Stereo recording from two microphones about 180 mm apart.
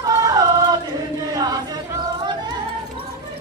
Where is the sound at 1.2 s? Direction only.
20° right (ahead or behind).